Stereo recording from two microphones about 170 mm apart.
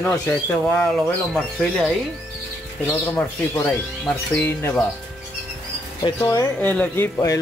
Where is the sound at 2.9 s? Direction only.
15° left (ahead or behind).